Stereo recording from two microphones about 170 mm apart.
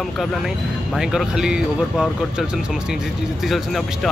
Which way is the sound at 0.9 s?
5° right (ahead or behind).